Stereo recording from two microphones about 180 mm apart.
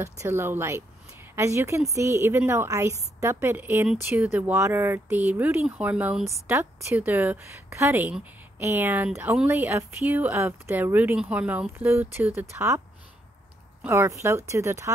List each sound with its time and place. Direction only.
0.0 s speech: 15° right (ahead or behind)
13.8 s speech: 15° right (ahead or behind)